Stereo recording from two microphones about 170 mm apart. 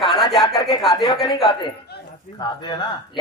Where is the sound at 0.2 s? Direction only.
Centre (ahead or behind).